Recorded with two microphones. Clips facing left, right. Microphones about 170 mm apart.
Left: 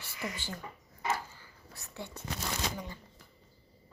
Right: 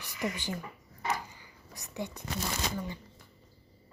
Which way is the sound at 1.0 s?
15° right (ahead or behind).